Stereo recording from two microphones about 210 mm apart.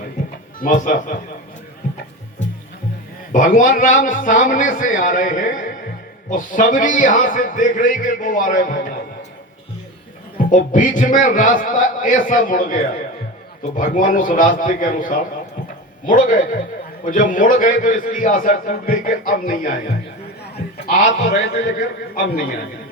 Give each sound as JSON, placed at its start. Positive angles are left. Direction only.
{"t": 0.6, "sound": "a man's voice", "side_deg": 40}
{"t": 3.3, "sound": "a man's voice", "side_deg": 40}
{"t": 10.3, "sound": "a man's voice", "side_deg": 40}
{"t": 20.8, "sound": "a man's voice", "side_deg": 40}